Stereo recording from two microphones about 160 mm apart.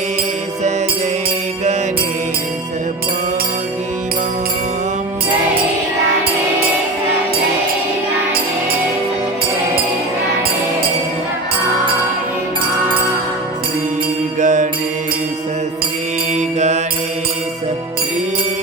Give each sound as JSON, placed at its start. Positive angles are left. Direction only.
{"t": 14.4, "sound": "mantra", "side_deg": -50}
{"t": 16.6, "sound": "mantra", "side_deg": -45}